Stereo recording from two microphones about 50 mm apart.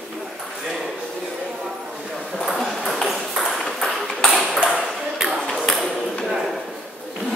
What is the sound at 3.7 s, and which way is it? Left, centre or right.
Ping, centre.